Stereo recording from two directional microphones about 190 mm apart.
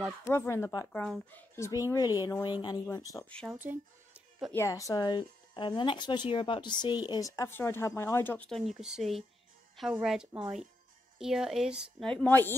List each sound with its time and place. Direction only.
0.2 s speech: 15° left (ahead or behind)
1.0 s a woman's voice: centre (ahead or behind)
1.5 s speech: 15° left (ahead or behind)
3.3 s a woman's voice: 5° left (ahead or behind)
4.6 s a woman's voice: 15° left (ahead or behind)